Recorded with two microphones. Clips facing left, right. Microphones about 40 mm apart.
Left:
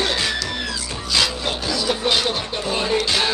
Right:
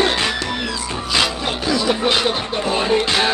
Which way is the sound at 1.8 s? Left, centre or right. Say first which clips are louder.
Right 1 dB; centre.